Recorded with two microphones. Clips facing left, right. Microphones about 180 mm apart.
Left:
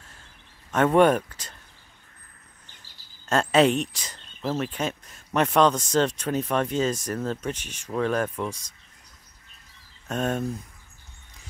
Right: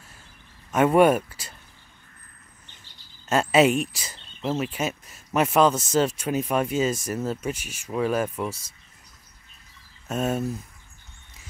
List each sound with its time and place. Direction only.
0.7 s speech: 10° right (ahead or behind)
3.3 s speech: 5° right (ahead or behind)
10.0 s speech: 5° right (ahead or behind)